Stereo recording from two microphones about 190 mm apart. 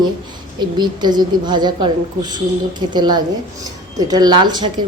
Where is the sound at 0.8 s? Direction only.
25° right (ahead or behind).